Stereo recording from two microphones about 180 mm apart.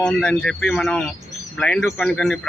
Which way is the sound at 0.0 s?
5° left (ahead or behind).